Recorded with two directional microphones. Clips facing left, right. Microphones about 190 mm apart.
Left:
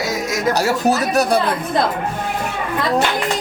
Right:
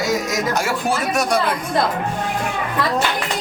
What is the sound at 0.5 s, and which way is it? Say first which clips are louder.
Music: left 4 dB; 40° left (ahead or behind).